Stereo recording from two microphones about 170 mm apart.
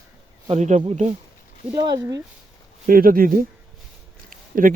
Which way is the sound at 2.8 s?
55° right (ahead or behind).